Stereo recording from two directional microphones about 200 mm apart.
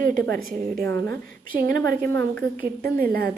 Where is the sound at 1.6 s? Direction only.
50° right (ahead or behind).